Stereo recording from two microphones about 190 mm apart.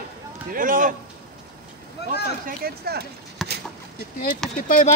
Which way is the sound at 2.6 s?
55° right (ahead or behind).